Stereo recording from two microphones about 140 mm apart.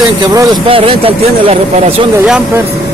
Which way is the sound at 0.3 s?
25° right (ahead or behind).